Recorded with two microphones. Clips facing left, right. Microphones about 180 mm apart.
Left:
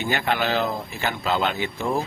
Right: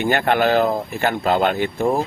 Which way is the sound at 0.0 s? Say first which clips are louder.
Right 7 dB; 55° right (ahead or behind).